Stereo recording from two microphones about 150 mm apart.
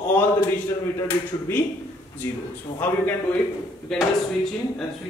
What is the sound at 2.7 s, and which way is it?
Speech, 15° left (ahead or behind).